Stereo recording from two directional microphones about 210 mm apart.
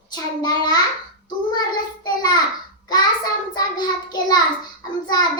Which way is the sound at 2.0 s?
20° left (ahead or behind).